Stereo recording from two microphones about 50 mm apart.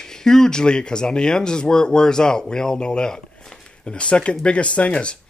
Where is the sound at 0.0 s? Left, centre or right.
Centre.